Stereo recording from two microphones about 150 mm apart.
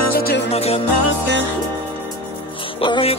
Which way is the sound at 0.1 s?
90° left.